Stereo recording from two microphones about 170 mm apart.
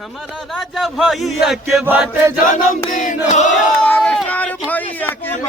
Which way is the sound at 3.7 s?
10° left (ahead or behind).